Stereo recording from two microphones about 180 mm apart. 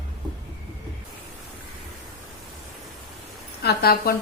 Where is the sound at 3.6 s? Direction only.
60° left (ahead or behind).